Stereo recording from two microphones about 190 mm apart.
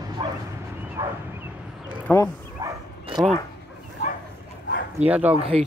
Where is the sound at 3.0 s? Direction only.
30° right (ahead or behind).